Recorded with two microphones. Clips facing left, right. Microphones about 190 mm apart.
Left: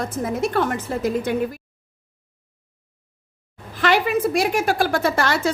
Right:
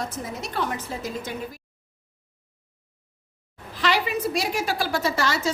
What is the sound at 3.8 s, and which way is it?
A woman's voice, 50° left (ahead or behind).